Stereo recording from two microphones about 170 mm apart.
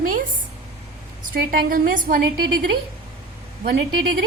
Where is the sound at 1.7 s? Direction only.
55° right (ahead or behind).